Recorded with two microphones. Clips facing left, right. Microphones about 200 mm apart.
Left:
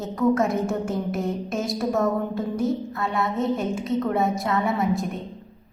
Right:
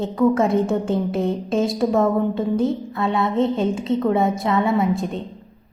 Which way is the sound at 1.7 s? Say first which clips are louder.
Right 3 dB; 90° right.